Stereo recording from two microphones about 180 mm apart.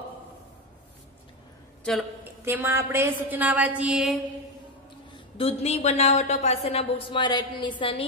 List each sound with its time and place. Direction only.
2.4 s a woman's voice: 15° right (ahead or behind)
5.4 s a woman's voice: 35° left (ahead or behind)